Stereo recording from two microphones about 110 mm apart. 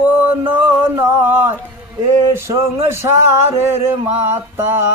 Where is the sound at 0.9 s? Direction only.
20° right (ahead or behind).